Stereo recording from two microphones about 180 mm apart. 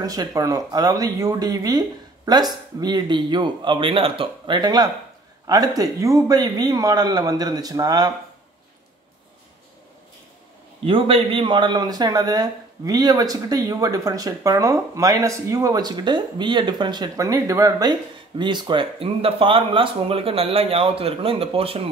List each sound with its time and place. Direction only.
0.0 s a man's voice: 20° right (ahead or behind)
10.8 s a man's voice: 30° right (ahead or behind)